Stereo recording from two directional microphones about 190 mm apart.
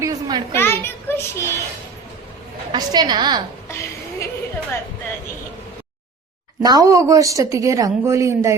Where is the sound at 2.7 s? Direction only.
20° right (ahead or behind).